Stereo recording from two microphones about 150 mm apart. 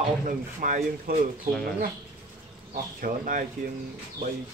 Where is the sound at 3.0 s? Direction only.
65° right (ahead or behind).